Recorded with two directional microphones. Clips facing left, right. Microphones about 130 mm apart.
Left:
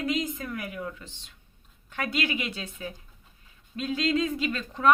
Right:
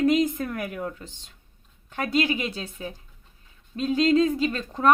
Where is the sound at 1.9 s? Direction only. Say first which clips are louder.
Right 5 dB; 35° right (ahead or behind).